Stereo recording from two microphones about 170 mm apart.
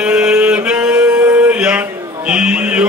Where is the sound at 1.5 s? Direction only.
5° right (ahead or behind).